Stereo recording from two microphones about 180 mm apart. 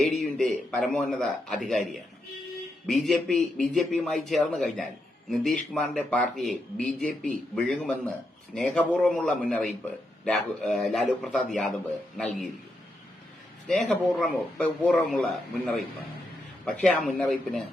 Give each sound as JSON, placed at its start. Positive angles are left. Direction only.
{"t": 0.0, "sound": "a man's voice", "side_deg": 0}
{"t": 13.7, "sound": "a man's voice", "side_deg": 5}